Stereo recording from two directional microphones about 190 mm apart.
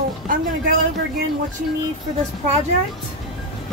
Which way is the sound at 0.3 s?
45° right (ahead or behind).